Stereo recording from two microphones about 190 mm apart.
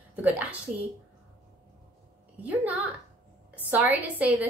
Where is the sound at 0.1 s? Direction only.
5° right (ahead or behind).